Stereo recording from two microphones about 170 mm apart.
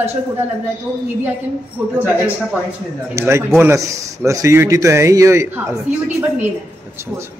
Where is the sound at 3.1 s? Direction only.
15° right (ahead or behind).